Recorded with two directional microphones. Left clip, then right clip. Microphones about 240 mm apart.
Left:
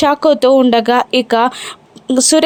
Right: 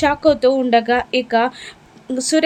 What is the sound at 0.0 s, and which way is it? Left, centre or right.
A woman's voice, left.